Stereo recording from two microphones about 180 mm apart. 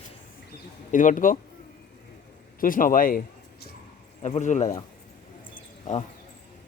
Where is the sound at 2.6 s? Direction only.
50° left (ahead or behind).